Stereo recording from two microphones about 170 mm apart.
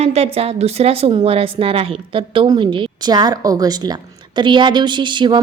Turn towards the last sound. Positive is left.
turn(degrees=-25)  # may be behind; listen again after turning